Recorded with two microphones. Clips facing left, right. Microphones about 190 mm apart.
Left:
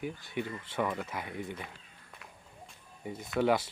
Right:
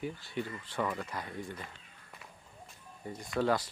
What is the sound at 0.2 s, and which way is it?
Speech, 20° left (ahead or behind).